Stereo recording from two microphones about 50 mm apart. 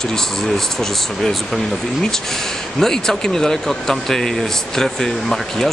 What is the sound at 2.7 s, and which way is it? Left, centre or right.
Speech, centre.